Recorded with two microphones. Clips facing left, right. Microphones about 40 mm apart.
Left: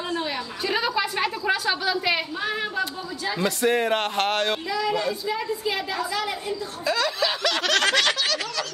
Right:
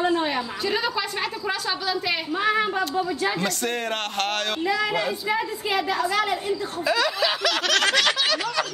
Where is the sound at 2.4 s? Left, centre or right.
Right.